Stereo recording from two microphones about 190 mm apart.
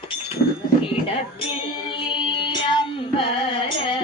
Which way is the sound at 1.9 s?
25° left (ahead or behind).